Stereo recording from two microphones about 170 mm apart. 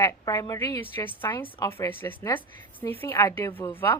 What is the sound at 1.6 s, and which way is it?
Speech, 25° left (ahead or behind).